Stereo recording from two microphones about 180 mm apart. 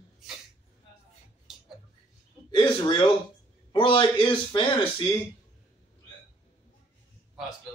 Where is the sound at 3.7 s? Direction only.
30° left (ahead or behind).